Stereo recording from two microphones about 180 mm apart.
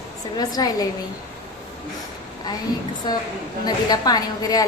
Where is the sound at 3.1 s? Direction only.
25° left (ahead or behind).